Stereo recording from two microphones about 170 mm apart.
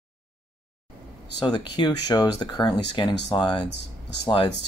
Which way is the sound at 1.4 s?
25° left (ahead or behind).